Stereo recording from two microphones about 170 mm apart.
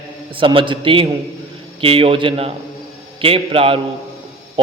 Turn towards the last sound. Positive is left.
turn(degrees=-35)  # may be behind; listen again after turning